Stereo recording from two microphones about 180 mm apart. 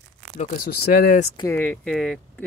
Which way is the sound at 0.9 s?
55° left (ahead or behind).